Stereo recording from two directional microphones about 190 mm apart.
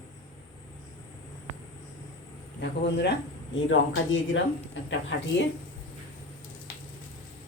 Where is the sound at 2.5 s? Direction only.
65° left (ahead or behind); by 4.2 s 85° left.